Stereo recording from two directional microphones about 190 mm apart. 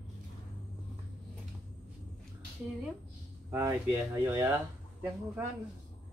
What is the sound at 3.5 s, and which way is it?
Speech, 15° right (ahead or behind).